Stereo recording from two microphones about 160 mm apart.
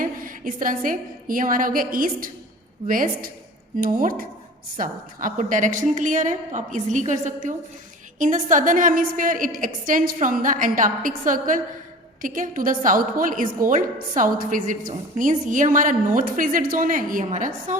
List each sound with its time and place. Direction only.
0.0 s a woman's voice: 60° right (ahead or behind)